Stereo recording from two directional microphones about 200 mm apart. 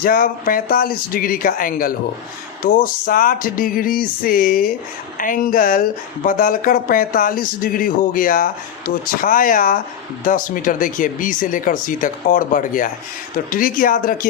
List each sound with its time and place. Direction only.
0.0 s speech: 45° left (ahead or behind)
3.1 s speech: 45° left (ahead or behind)